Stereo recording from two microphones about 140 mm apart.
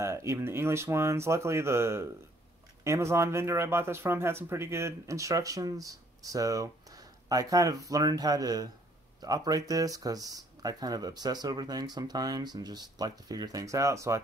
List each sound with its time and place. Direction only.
0.0 s speech: 20° right (ahead or behind)